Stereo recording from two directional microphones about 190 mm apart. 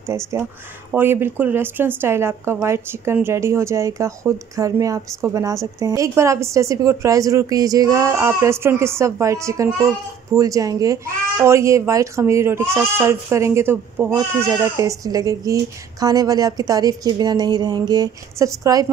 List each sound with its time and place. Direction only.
0.1 s speech: 15° right (ahead or behind)